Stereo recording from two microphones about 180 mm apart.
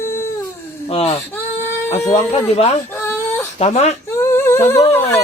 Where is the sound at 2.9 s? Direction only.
10° left (ahead or behind).